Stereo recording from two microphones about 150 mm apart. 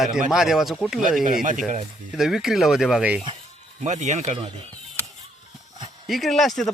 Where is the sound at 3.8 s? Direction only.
50° right (ahead or behind).